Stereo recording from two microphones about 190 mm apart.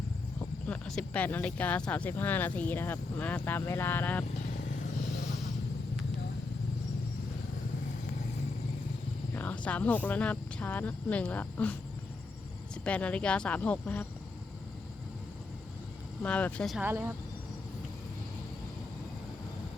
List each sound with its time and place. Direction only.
0.7 s speech: 5° left (ahead or behind)
9.3 s speech: 10° left (ahead or behind)
12.8 s speech: 5° left (ahead or behind)
16.2 s speech: 5° left (ahead or behind)
16.8 s speech: 10° right (ahead or behind)